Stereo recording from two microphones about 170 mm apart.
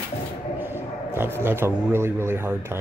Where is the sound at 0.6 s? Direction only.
15° right (ahead or behind).